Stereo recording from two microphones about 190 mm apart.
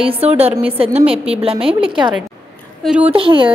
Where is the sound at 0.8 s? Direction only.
30° right (ahead or behind).